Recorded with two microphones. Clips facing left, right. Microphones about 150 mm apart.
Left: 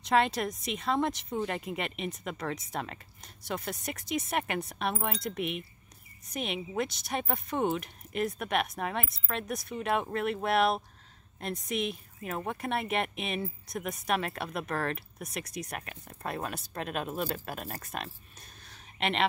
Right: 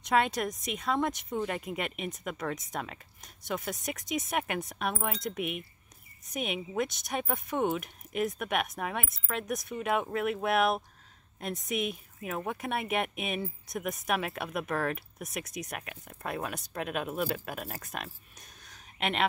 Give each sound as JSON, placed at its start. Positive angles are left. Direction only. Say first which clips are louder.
{"t": 0.1, "sound": "speech", "louder": "left 1 dB", "side_deg": 0}